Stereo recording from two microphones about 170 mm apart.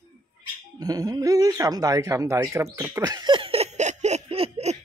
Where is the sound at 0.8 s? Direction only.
20° right (ahead or behind); by 4.8 s 35° right (ahead or behind).